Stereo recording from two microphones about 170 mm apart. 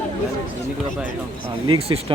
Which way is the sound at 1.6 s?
35° right (ahead or behind).